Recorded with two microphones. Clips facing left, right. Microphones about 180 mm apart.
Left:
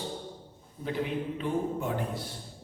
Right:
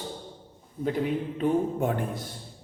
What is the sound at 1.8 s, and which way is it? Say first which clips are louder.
Speech: right 4 dB; 50° right (ahead or behind).